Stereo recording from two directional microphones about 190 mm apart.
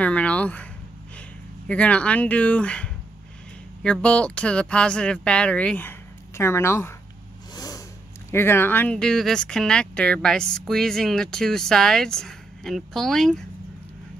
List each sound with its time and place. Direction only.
0.0 s speech: 5° left (ahead or behind)
1.7 s speech: 5° left (ahead or behind)
7.5 s vehicle: 20° left (ahead or behind)
8.3 s speech: 10° left (ahead or behind)